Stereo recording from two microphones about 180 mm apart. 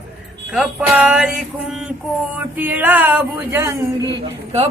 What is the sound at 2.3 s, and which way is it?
Speech, 10° right (ahead or behind).